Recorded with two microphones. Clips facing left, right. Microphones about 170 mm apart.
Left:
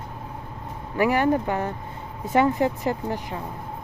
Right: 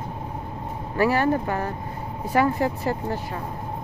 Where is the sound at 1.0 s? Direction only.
15° left (ahead or behind).